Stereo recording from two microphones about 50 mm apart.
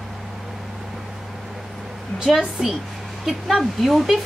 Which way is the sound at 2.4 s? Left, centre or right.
Centre.